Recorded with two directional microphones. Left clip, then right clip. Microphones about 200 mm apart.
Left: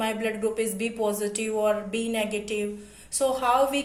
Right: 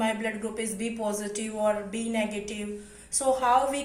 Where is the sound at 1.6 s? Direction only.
45° left (ahead or behind).